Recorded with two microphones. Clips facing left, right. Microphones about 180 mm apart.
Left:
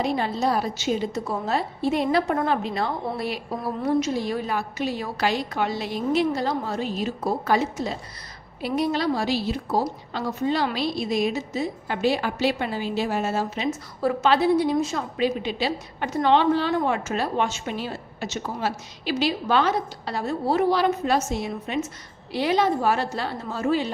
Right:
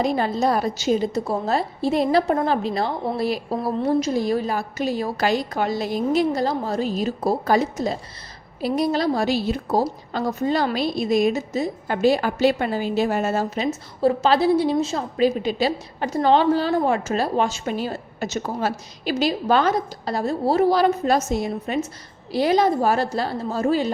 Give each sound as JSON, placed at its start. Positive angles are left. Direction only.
{"t": 0.0, "sound": "a woman's voice", "side_deg": -45}
{"t": 14.0, "sound": "a woman's voice", "side_deg": -35}
{"t": 15.2, "sound": "a woman's voice", "side_deg": -45}